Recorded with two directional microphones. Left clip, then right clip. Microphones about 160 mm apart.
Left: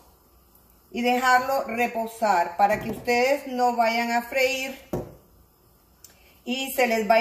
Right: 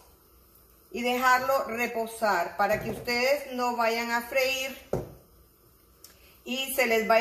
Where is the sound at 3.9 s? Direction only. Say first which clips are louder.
Left 4 dB; 10° right (ahead or behind).